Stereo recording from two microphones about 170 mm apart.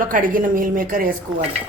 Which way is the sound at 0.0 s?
55° right (ahead or behind).